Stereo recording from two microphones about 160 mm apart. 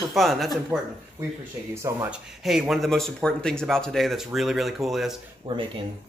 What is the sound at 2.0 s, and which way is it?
Speech, 5° right (ahead or behind).